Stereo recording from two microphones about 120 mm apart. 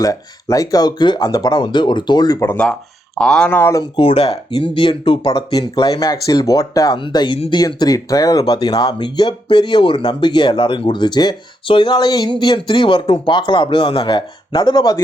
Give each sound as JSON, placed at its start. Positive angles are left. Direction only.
{"t": 0.0, "sound": "speech", "side_deg": 30}
{"t": 3.2, "sound": "speech", "side_deg": 5}
{"t": 3.6, "sound": "speech", "side_deg": 25}
{"t": 3.9, "sound": "speech", "side_deg": 55}
{"t": 6.9, "sound": "speech", "side_deg": 40}